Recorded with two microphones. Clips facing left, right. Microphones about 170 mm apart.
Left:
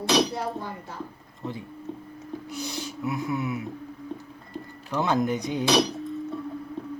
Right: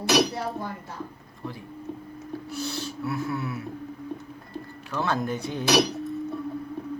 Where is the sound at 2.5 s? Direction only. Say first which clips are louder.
Right 2 dB; 15° left (ahead or behind).